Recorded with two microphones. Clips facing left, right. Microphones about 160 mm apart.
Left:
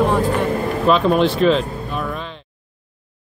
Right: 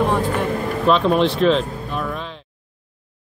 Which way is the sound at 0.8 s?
Centre (ahead or behind).